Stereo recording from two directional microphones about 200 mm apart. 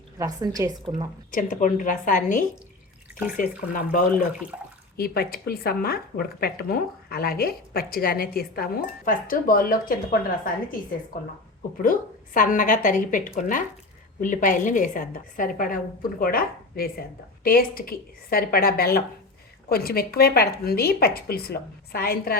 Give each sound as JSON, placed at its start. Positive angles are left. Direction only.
{"t": 0.2, "sound": "a woman's voice", "side_deg": -20}
{"t": 1.3, "sound": "a woman's voice", "side_deg": 40}
{"t": 4.5, "sound": "water", "side_deg": -5}
{"t": 4.9, "sound": "speech", "side_deg": 50}